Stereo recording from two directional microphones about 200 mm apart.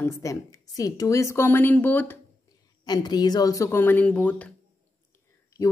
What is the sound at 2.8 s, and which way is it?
A woman's voice, 20° left (ahead or behind).